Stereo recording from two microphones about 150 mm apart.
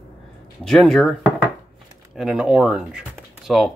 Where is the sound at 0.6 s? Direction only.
5° left (ahead or behind).